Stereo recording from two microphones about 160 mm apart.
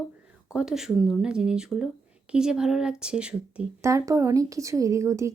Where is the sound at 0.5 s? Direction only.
5° right (ahead or behind).